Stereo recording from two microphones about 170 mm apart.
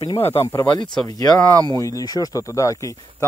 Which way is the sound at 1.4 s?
20° right (ahead or behind).